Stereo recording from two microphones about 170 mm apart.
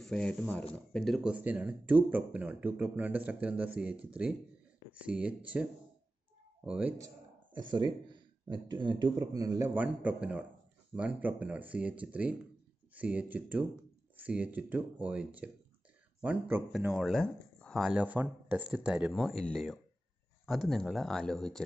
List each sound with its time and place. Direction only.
0.0 s speech: 5° left (ahead or behind)
7.7 s speech: 25° right (ahead or behind)
9.8 s speech: 5° right (ahead or behind)